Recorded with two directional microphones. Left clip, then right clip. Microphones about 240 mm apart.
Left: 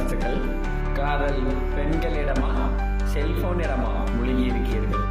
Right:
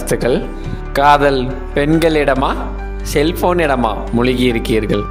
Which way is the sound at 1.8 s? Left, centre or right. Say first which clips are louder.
Right 17 dB; right.